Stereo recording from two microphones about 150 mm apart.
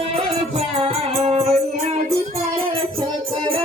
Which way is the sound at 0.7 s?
45° right (ahead or behind).